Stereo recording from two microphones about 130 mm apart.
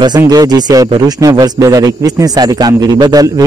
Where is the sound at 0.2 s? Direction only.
30° right (ahead or behind).